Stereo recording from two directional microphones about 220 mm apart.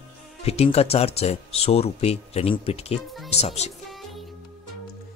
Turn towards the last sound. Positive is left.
turn(degrees=30)  # may be behind; listen again after turning